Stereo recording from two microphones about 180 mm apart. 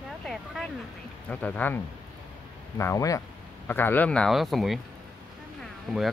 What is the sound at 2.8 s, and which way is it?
Speech, 15° left (ahead or behind).